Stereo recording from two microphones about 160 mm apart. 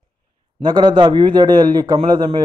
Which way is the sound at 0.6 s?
30° right (ahead or behind).